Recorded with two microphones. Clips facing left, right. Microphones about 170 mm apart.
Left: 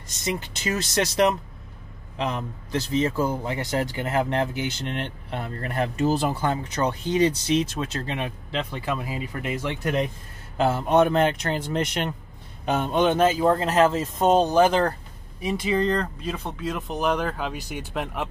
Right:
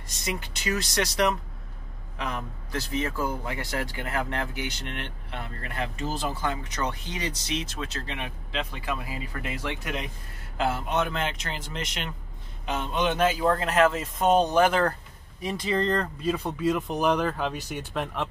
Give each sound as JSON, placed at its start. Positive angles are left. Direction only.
{"t": 0.2, "sound": "a man's voice", "side_deg": 25}
{"t": 10.9, "sound": "a man's voice", "side_deg": 45}
{"t": 13.4, "sound": "a man's voice", "side_deg": 25}
{"t": 13.7, "sound": "speech", "side_deg": 35}
{"t": 15.4, "sound": "speech", "side_deg": 5}